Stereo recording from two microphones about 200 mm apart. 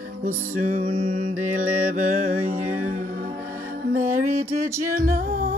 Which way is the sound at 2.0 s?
45° right (ahead or behind).